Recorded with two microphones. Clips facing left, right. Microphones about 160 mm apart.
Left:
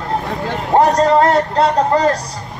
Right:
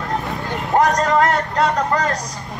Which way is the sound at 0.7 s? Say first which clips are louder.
Left 4 dB; 30° left (ahead or behind).